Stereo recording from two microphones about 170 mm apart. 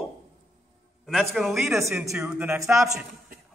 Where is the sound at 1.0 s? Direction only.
Centre (ahead or behind).